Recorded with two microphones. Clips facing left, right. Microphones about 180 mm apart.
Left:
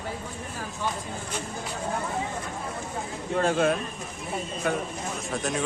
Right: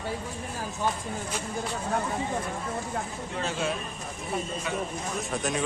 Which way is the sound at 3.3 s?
50° left (ahead or behind).